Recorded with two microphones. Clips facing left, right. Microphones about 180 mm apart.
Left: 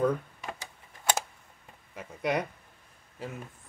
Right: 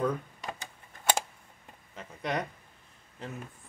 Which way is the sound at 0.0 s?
5° left (ahead or behind).